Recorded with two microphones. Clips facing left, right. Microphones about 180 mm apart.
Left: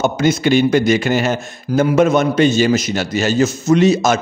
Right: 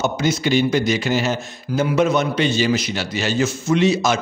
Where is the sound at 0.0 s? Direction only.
55° left (ahead or behind).